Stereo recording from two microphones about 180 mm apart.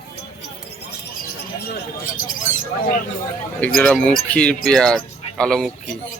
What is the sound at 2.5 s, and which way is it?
Speech, 45° left (ahead or behind).